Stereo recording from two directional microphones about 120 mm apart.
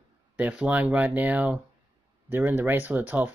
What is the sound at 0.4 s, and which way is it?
Speech, 10° right (ahead or behind).